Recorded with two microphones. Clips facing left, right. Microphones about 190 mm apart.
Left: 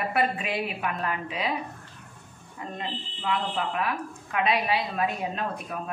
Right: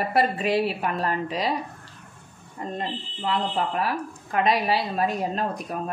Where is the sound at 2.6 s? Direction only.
40° right (ahead or behind).